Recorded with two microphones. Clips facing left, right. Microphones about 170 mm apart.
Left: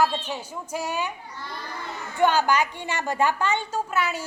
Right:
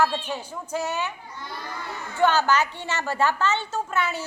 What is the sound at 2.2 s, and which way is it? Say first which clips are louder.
A woman's voice: even; 15° left (ahead or behind).